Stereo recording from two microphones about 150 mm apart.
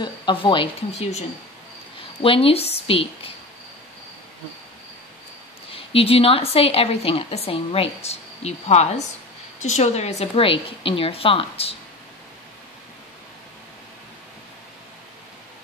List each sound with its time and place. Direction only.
0.0 s a woman's voice: 30° left (ahead or behind)
2.2 s a woman's voice: 40° left (ahead or behind)
5.7 s a woman's voice: 40° left (ahead or behind)